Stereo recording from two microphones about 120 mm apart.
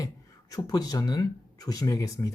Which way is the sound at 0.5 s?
30° left (ahead or behind).